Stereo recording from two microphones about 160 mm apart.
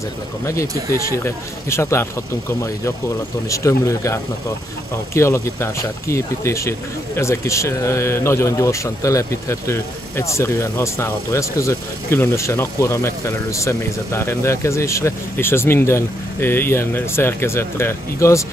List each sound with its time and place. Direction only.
0.5 s speech: 20° left (ahead or behind)
3.4 s speech: 20° left (ahead or behind)